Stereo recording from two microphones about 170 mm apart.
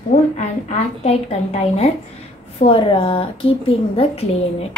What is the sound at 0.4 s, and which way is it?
A woman's voice, 40° left (ahead or behind).